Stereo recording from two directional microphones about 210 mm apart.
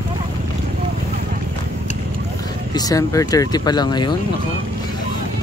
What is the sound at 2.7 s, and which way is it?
Speech, 15° left (ahead or behind).